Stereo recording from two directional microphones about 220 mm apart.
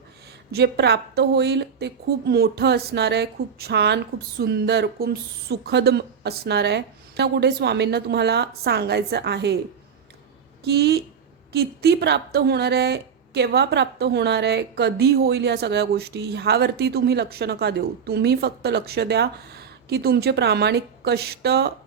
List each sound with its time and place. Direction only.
0.5 s a woman's voice: 50° right (ahead or behind)
10.6 s a woman's voice: 50° right (ahead or behind)